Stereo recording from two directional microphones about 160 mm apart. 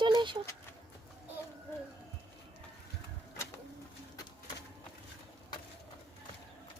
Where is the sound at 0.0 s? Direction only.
30° right (ahead or behind).